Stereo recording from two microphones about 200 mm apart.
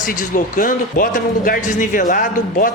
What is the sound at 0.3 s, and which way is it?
Speech, 40° left (ahead or behind).